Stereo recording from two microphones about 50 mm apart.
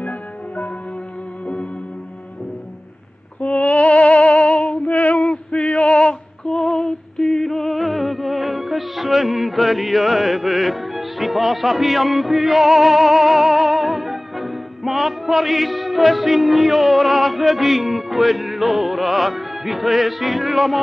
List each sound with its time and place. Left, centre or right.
3.3 s music: left
4.2 s music: centre
4.8 s female singing: left
5.1 s female singing: centre
6.6 s music: centre